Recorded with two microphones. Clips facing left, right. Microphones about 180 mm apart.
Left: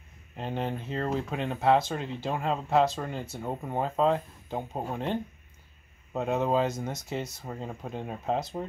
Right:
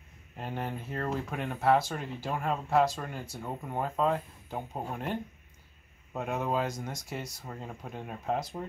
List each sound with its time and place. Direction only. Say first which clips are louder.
0.4 s speech: left 4 dB; 20° left (ahead or behind)